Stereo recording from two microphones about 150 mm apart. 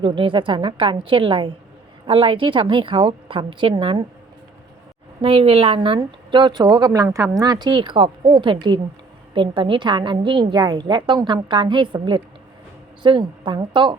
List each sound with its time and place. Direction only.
0.0 s a woman's voice: 35° right (ahead or behind)
5.2 s a woman's voice: 40° right (ahead or behind)